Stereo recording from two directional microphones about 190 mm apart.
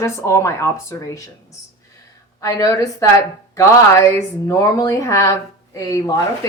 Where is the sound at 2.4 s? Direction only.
15° left (ahead or behind).